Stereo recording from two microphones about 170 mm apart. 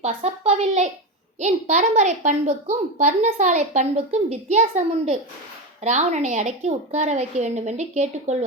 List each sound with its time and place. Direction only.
0.0 s a woman's voice: 40° right (ahead or behind)